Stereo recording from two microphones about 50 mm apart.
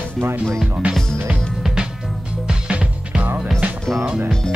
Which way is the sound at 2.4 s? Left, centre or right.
Centre.